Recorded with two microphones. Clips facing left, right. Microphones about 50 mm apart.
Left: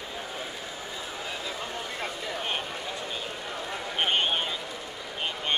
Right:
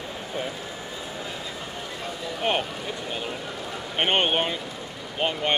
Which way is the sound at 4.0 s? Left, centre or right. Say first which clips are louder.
Right 4 dB; right.